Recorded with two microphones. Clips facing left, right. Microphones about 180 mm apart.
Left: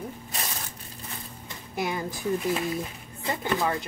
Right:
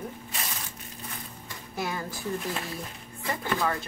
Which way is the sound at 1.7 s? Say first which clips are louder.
Left 3 dB; 15° left (ahead or behind).